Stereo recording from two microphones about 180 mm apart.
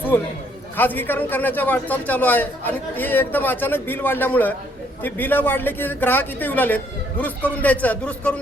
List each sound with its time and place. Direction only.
0.8 s a man's voice: 10° left (ahead or behind)